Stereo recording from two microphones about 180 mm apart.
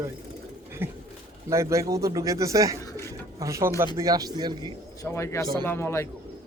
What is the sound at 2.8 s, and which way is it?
Pigeon, 20° left (ahead or behind).